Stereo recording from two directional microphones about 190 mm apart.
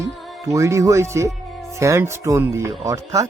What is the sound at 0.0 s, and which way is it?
Speech, 15° right (ahead or behind).